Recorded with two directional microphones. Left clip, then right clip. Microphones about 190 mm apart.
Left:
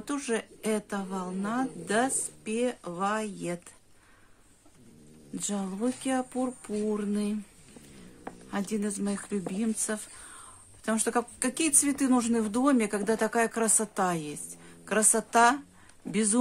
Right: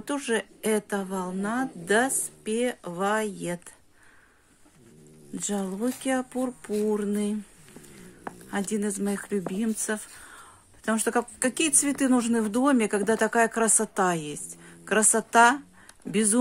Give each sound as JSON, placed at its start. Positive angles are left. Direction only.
{"t": 0.0, "sound": "speech", "side_deg": -15}
{"t": 5.3, "sound": "speech", "side_deg": -15}
{"t": 8.5, "sound": "speech", "side_deg": -15}